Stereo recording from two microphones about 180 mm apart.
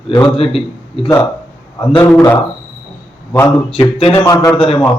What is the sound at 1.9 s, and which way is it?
A man's voice, 10° left (ahead or behind).